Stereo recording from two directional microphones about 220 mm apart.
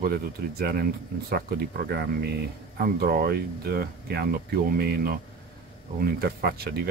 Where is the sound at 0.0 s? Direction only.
45° right (ahead or behind).